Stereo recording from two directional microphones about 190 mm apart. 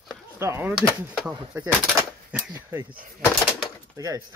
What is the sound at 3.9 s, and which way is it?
Speech, 20° right (ahead or behind).